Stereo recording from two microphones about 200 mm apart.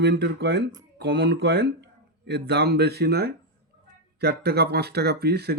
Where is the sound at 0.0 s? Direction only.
55° right (ahead or behind).